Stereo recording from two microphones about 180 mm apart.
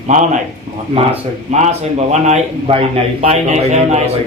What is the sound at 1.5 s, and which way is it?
A man's voice, 40° right (ahead or behind).